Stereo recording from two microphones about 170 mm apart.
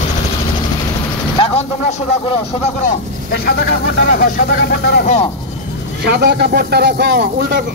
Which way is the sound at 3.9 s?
55° left (ahead or behind).